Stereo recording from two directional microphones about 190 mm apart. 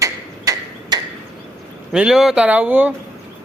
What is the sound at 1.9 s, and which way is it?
Speech, 5° right (ahead or behind).